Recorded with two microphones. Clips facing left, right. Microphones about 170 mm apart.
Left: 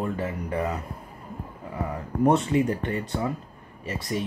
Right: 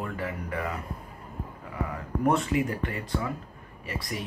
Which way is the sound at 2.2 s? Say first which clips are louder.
Left 4 dB; 25° left (ahead or behind).